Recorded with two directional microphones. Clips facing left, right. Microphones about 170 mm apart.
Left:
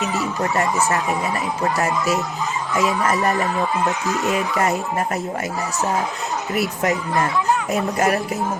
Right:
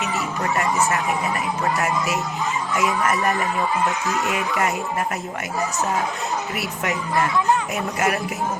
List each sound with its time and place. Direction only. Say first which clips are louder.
0.0 s a sound: left 3 dB; 40° left (ahead or behind)
4.2 s speech: left 4 dB; 40° left (ahead or behind)
6.5 s speech: left 5 dB; 40° left (ahead or behind)